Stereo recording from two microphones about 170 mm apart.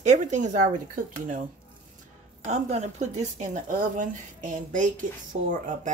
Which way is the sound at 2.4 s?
45° right (ahead or behind).